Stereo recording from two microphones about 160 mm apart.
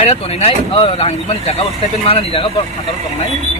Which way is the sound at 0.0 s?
40° left (ahead or behind).